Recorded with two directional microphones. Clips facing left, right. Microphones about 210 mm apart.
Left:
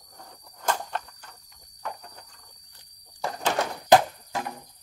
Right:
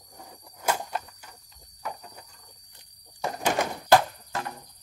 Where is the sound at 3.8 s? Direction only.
15° left (ahead or behind).